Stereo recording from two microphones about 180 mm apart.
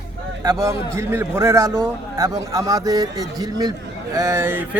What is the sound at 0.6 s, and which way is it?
Speech, 15° right (ahead or behind).